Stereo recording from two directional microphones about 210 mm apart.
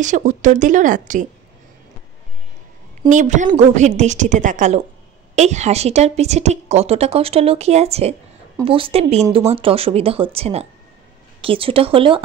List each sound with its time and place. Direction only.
0.0 s a woman's voice: 35° right (ahead or behind)
3.1 s a woman's voice: 35° right (ahead or behind)